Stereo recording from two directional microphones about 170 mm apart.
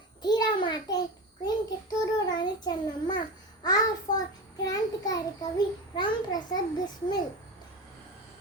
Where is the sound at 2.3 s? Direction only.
25° left (ahead or behind).